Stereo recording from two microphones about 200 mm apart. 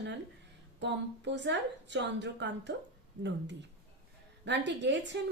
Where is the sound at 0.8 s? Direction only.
60° right (ahead or behind).